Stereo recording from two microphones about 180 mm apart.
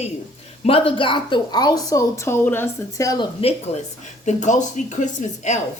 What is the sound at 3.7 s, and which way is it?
A woman's voice, 35° left (ahead or behind).